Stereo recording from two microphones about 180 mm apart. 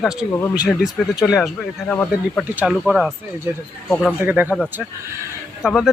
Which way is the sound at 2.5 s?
5° right (ahead or behind).